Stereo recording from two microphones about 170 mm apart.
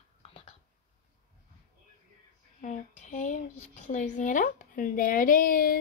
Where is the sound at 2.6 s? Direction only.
45° left (ahead or behind).